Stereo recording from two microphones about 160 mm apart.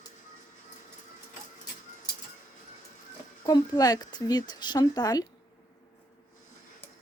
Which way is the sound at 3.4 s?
25° left (ahead or behind).